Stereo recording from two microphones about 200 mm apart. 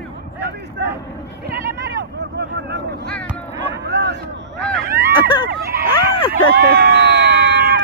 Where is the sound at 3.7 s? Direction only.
60° right (ahead or behind).